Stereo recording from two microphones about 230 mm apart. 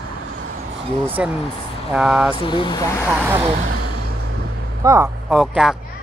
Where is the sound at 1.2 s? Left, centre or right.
Centre.